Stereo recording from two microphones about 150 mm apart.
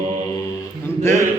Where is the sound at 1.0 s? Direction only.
15° left (ahead or behind).